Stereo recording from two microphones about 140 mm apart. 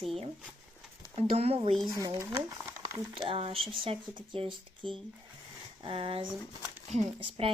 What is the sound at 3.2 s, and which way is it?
Speech, 40° right (ahead or behind).